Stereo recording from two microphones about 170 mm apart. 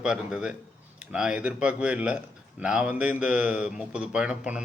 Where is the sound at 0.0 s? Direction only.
5° right (ahead or behind).